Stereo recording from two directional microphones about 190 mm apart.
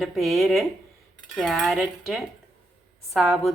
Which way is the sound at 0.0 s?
Centre (ahead or behind).